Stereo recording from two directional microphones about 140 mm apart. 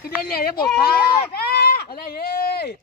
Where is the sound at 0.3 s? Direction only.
90° left.